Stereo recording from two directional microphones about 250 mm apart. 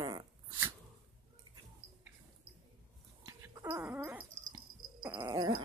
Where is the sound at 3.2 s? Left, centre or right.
Centre.